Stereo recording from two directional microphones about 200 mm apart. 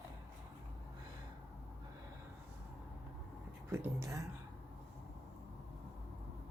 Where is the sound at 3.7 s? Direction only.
15° right (ahead or behind).